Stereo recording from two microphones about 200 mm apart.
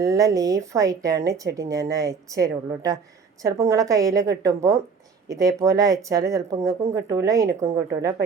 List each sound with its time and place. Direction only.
0.0 s speech: 15° right (ahead or behind)